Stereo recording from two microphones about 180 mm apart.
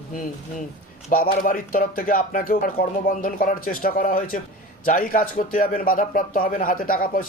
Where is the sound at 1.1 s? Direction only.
55° left (ahead or behind).